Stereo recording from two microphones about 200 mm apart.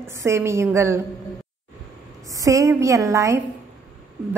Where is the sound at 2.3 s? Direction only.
15° right (ahead or behind).